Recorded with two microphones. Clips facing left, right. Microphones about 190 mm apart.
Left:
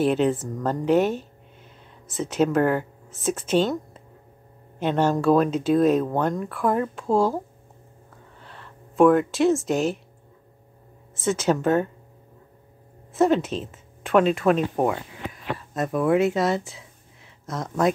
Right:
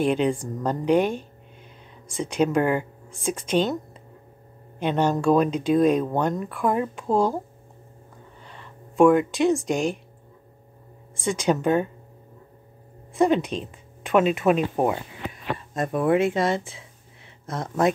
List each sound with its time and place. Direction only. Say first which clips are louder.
0.0 s speech: left 1 dB; 5° left (ahead or behind)
2.5 s speech: left 1 dB; 10° right (ahead or behind)
3.1 s speech: left 2 dB; 5° left (ahead or behind)
4.7 s speech: left 1 dB; 5° left (ahead or behind)
7.1 s speech: left 1 dB; 15° right (ahead or behind)
8.5 s speech: even; centre (ahead or behind)
11.4 s speech: even; 15° right (ahead or behind)
13.2 s a woman's voice: even; 5° left (ahead or behind)
14.4 s speech: even; 10° right (ahead or behind)